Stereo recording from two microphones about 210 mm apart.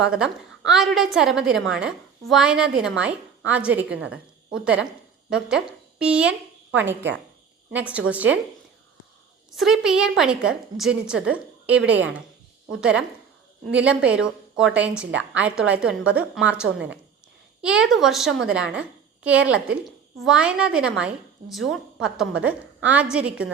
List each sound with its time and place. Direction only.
0.0 s a woman's voice: 5° right (ahead or behind)
7.7 s a woman's voice: 5° right (ahead or behind)
9.5 s a woman's voice: centre (ahead or behind)
13.7 s a woman's voice: 5° right (ahead or behind)
15.1 s a woman's voice: 60° right (ahead or behind)
15.4 s a woman's voice: 5° right (ahead or behind)